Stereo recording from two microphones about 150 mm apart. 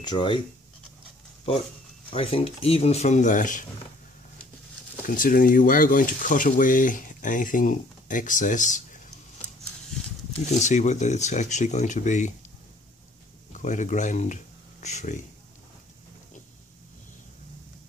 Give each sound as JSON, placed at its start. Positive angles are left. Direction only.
{"t": 0.0, "sound": "speech", "side_deg": 30}
{"t": 1.5, "sound": "speech", "side_deg": 40}
{"t": 5.0, "sound": "speech", "side_deg": 65}
{"t": 10.4, "sound": "speech", "side_deg": 50}
{"t": 13.5, "sound": "speech", "side_deg": 55}